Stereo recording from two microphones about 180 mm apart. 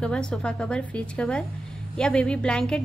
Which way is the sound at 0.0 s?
5° left (ahead or behind).